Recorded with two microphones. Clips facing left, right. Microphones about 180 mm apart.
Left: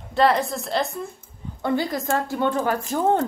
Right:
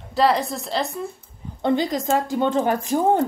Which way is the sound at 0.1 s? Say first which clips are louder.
Even; centre (ahead or behind).